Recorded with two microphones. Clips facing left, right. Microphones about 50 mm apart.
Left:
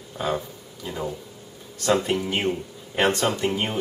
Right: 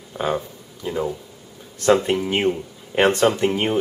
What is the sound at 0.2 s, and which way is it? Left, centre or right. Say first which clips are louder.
Speech: right 3 dB; centre.